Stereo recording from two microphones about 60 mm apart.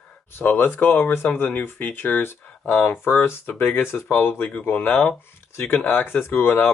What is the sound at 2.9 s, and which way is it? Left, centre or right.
Speech, left.